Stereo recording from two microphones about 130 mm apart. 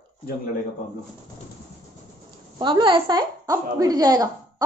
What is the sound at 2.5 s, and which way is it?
A woman's voice, 35° right (ahead or behind).